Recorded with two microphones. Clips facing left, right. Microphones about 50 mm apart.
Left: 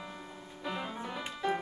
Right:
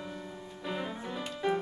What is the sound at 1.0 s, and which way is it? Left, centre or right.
Music, centre.